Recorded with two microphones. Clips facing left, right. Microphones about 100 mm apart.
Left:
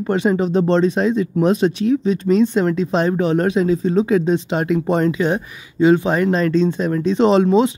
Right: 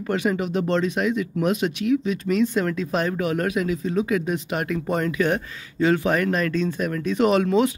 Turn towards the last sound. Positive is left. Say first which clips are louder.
# left 5 dB
turn(degrees=25)  # may be behind; listen again after turning